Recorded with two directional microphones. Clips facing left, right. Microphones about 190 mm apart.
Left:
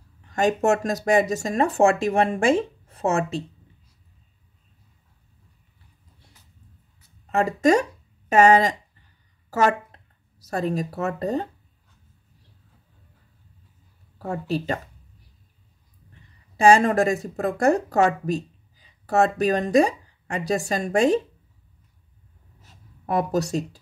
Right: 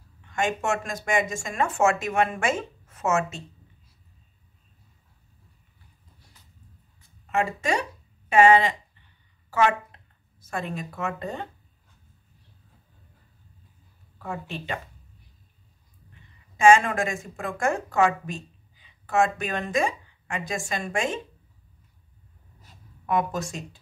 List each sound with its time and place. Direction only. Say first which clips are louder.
0.2 s speech: left 6 dB; 35° left (ahead or behind)
7.2 s speech: left 7 dB; 40° left (ahead or behind)
8.3 s a sound: left 2 dB; 40° left (ahead or behind)
14.1 s speech: left 8 dB; 40° left (ahead or behind)
16.1 s speech: left 1 dB; 35° left (ahead or behind)
23.0 s speech: left 3 dB; 40° left (ahead or behind)